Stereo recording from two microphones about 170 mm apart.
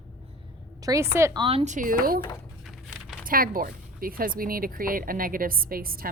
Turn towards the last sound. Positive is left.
turn(degrees=-60)  # may be behind; listen again after turning